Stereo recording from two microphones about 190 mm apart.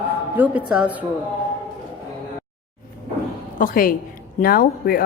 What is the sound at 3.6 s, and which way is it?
Speech, 45° left (ahead or behind).